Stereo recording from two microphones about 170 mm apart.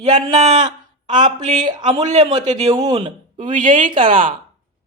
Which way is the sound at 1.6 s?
25° right (ahead or behind).